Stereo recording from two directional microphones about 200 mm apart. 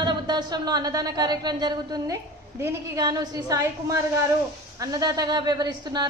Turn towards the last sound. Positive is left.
turn(degrees=-20)  # may be behind; listen again after turning